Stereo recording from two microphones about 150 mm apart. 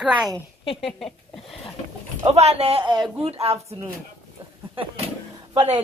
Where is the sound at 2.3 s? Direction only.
45° right (ahead or behind).